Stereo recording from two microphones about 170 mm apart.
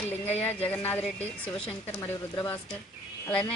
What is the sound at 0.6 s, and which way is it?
A woman's voice, 10° left (ahead or behind).